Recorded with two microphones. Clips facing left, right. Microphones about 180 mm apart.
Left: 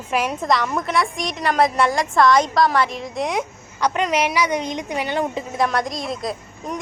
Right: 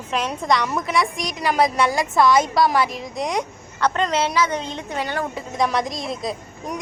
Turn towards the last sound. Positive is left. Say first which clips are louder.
# left 1 dB
turn(degrees=-10)  # may be behind; listen again after turning